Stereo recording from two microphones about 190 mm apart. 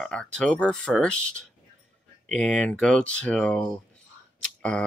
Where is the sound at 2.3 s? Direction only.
5° left (ahead or behind).